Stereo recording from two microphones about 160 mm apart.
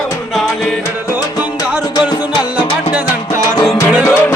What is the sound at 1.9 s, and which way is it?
Music, 30° left (ahead or behind).